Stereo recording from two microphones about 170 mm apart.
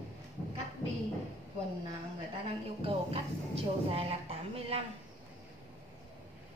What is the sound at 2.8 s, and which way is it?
A woman's voice, 35° right (ahead or behind).